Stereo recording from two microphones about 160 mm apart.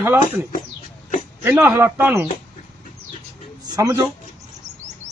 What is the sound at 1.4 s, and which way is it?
Speech, 15° right (ahead or behind).